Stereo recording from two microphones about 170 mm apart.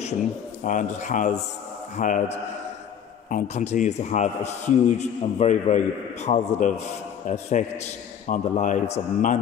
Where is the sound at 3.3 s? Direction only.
45° left (ahead or behind).